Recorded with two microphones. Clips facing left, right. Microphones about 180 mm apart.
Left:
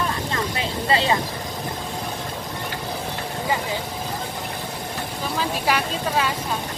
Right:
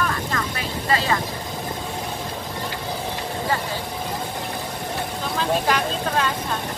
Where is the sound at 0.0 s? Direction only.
25° left (ahead or behind).